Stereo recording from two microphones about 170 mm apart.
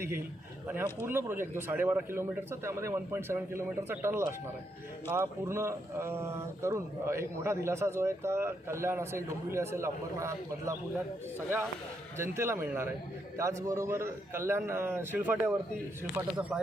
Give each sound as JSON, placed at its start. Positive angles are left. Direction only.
{"t": 1.0, "sound": "speech", "side_deg": -15}
{"t": 12.1, "sound": "speech", "side_deg": -15}